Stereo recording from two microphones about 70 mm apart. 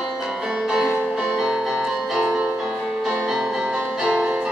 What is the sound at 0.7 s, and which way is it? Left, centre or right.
Music, centre.